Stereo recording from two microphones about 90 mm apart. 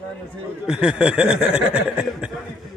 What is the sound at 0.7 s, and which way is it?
Speech, 10° right (ahead or behind).